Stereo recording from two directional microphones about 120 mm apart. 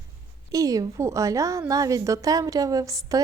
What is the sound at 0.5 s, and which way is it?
Speech, 30° right (ahead or behind).